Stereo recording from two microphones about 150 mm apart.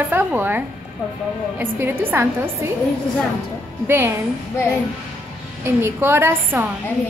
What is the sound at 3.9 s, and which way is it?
Speech, 15° right (ahead or behind).